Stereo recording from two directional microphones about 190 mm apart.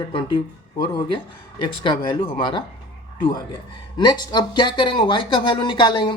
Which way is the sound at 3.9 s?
25° left (ahead or behind).